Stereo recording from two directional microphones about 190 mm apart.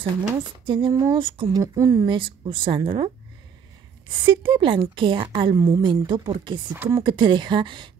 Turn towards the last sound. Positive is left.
turn(degrees=-25)  # may be behind; listen again after turning